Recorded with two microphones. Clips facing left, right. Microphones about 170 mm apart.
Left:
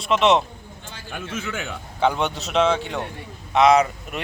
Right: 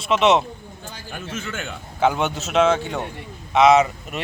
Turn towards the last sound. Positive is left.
turn(degrees=-5)  # may be behind; listen again after turning